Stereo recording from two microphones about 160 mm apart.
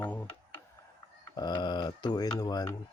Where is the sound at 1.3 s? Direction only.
25° left (ahead or behind).